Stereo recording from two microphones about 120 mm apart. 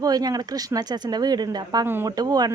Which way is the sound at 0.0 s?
30° right (ahead or behind).